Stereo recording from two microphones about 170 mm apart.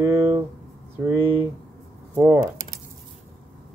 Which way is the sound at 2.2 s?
15° right (ahead or behind).